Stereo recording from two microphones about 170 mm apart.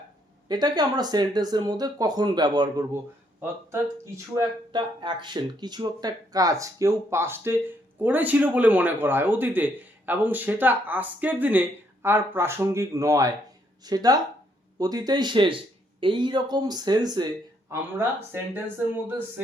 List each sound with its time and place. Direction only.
0.4 s speech: 25° right (ahead or behind)
3.4 s speech: 15° right (ahead or behind)
4.7 s speech: 30° right (ahead or behind)
17.7 s speech: 15° right (ahead or behind)